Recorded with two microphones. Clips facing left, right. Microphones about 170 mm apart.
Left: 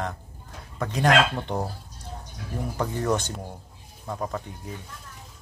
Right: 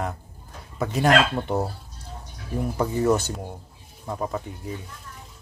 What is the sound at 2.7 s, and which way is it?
Speech, 5° right (ahead or behind).